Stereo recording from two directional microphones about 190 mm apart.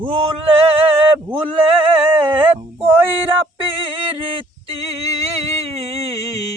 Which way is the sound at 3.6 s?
30° right (ahead or behind).